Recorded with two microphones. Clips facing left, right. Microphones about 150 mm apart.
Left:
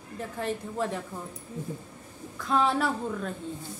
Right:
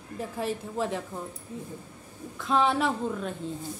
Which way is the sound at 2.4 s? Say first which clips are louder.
Right 1 dB; centre (ahead or behind).